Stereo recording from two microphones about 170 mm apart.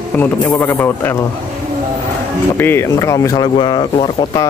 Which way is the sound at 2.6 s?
15° left (ahead or behind).